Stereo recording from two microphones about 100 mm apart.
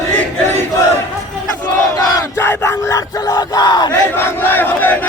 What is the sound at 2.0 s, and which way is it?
Crowd, 35° left (ahead or behind).